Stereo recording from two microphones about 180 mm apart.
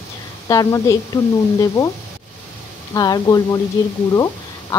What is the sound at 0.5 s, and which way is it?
A woman's voice, 20° left (ahead or behind).